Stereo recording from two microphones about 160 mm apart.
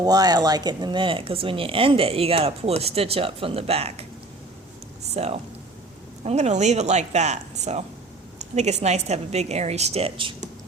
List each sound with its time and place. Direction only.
0.0 s speech: 25° right (ahead or behind); by 4.0 s 40° right (ahead or behind)
5.1 s a woman's voice: 40° right (ahead or behind)